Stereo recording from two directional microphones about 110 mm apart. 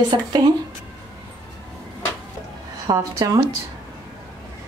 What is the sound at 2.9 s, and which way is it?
Speech, 30° right (ahead or behind).